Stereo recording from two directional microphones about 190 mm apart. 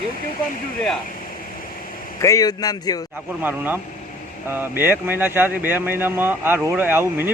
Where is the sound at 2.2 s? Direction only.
20° left (ahead or behind).